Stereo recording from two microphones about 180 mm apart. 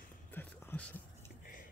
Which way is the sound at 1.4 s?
50° left (ahead or behind).